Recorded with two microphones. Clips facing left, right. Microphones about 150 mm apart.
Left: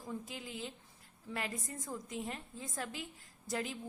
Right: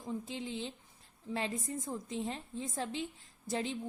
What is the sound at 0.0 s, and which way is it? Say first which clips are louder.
A woman's voice: right 4 dB; 25° right (ahead or behind).